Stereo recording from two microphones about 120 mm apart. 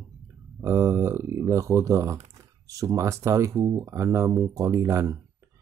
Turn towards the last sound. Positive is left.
turn(degrees=-25)  # may be behind; listen again after turning